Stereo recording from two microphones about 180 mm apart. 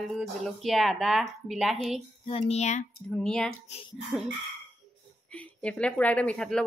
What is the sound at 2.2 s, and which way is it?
Speech, 35° left (ahead or behind).